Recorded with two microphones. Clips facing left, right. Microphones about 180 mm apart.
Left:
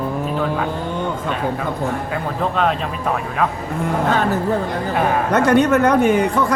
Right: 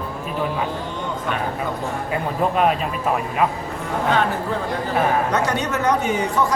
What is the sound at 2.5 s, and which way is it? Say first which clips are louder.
Speech: even; 10° right (ahead or behind).